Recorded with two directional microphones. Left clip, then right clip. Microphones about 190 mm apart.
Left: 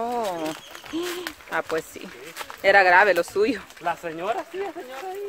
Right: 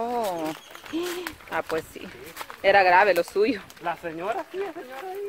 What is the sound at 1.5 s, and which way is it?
Speech, 5° right (ahead or behind).